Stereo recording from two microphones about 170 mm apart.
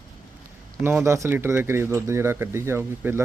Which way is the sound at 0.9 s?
15° right (ahead or behind).